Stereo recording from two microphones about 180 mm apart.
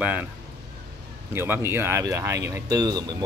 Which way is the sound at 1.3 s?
10° right (ahead or behind).